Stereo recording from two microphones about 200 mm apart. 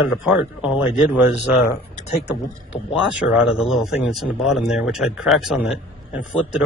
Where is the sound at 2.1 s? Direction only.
55° left (ahead or behind).